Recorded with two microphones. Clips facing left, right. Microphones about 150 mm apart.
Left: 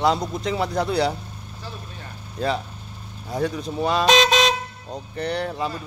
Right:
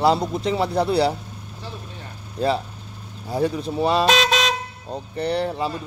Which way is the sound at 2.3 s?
5° right (ahead or behind).